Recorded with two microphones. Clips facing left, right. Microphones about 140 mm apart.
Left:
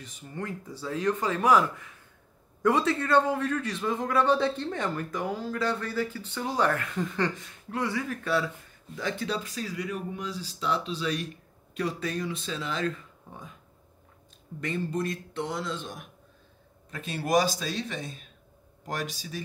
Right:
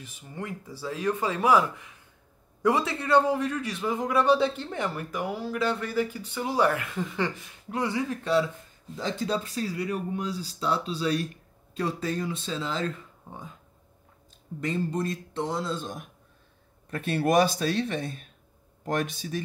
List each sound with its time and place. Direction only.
0.0 s a man's voice: 10° right (ahead or behind); by 13.5 s 25° right (ahead or behind)
14.6 s speech: 25° right (ahead or behind)
16.9 s speech: 60° right (ahead or behind)